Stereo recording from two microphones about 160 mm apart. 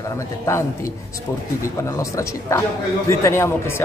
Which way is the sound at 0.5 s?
20° left (ahead or behind).